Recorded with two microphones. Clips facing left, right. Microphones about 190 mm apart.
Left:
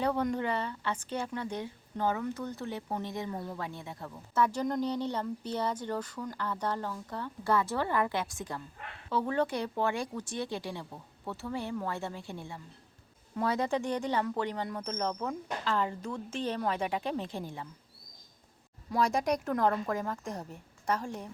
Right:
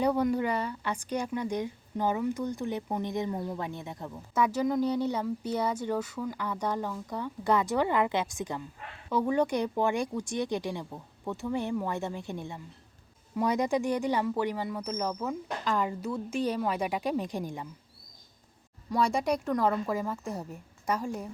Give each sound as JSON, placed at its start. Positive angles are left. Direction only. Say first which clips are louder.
{"t": 0.0, "sound": "a woman's voice", "louder": "right 4 dB", "side_deg": -10}
{"t": 15.6, "sound": "a woman's voice", "louder": "right 2 dB", "side_deg": -15}
{"t": 18.9, "sound": "a woman's voice", "louder": "right 1 dB", "side_deg": 0}